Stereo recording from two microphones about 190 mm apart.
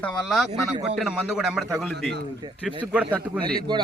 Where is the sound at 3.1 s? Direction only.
10° left (ahead or behind).